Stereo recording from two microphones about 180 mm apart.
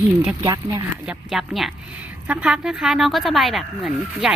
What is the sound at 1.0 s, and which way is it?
Speech, centre (ahead or behind).